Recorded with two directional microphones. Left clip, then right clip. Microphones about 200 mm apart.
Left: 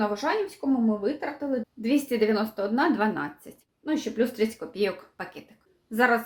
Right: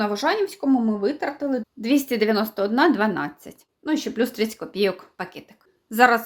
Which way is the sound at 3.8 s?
50° right (ahead or behind).